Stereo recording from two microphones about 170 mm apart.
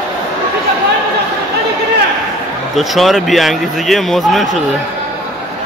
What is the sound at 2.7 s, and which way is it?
Speech, centre (ahead or behind).